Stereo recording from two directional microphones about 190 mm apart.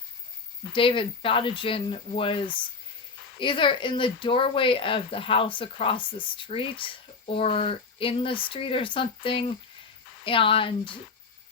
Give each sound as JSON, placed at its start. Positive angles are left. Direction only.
{"t": 0.7, "sound": "speech", "side_deg": 25}